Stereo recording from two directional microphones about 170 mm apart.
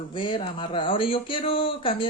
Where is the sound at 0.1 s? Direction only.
30° left (ahead or behind).